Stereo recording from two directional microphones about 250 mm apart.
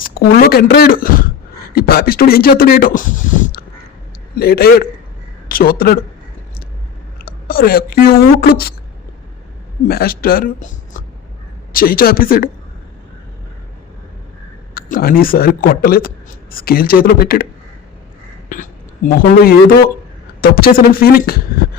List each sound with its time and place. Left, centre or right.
0.0 s speech: left
7.2 s speech: left
9.8 s speech: left
14.8 s speech: left
18.4 s speech: left